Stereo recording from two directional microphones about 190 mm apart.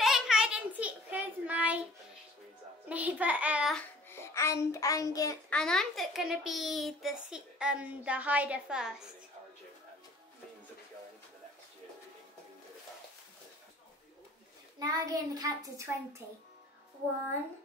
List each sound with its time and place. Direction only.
0.0 s child singing: 5° right (ahead or behind)
2.9 s child singing: 10° right (ahead or behind)
3.7 s a child's voice: 15° left (ahead or behind)
5.5 s a woman's voice: 5° left (ahead or behind)
14.8 s a child's voice: 20° right (ahead or behind)